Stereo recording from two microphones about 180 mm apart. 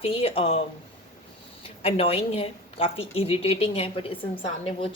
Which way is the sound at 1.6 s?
30° left (ahead or behind).